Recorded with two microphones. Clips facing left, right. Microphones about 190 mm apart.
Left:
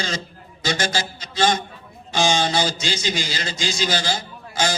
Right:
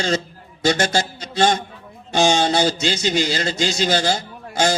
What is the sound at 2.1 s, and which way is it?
Speech, 60° right (ahead or behind).